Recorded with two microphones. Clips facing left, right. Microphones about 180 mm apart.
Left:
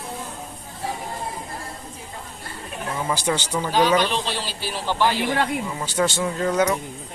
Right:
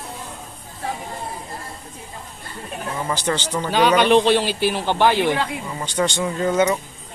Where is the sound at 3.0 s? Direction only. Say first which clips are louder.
Even; 5° left (ahead or behind).